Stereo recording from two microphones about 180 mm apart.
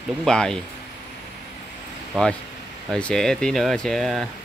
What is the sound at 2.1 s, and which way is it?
Speech, centre (ahead or behind).